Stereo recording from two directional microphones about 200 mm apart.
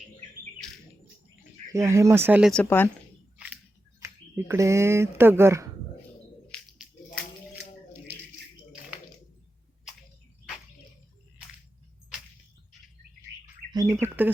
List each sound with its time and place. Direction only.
1.7 s speech: 15° right (ahead or behind)
2.5 s speech: 10° left (ahead or behind)
3.3 s a sound: 5° right (ahead or behind)
4.0 s speech: 15° right (ahead or behind)
13.7 s bird: 20° right (ahead or behind)